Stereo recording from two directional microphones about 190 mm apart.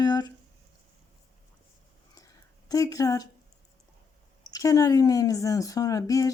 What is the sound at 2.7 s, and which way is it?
Speech, 20° left (ahead or behind).